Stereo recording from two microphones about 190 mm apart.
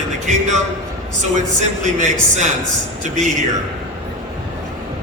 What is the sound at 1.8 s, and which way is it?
A man's voice, 40° right (ahead or behind).